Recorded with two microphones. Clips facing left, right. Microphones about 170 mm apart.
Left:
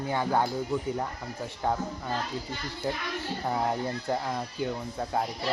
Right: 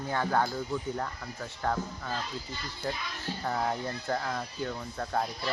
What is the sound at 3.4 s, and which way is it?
Speech, 15° left (ahead or behind).